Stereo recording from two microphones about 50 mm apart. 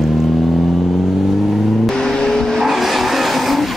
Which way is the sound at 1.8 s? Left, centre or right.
Centre.